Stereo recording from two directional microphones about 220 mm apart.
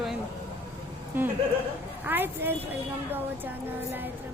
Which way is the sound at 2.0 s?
10° right (ahead or behind).